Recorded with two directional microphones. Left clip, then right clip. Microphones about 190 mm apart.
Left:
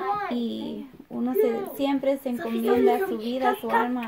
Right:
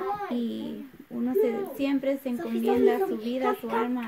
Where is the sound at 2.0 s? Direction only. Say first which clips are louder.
Left 3 dB; 15° right (ahead or behind).